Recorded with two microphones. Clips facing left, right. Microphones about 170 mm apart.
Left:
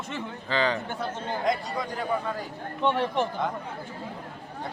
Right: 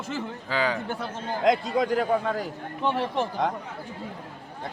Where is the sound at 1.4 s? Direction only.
90° right.